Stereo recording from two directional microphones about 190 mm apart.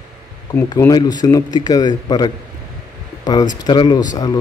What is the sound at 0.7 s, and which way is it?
Speech, 20° left (ahead or behind).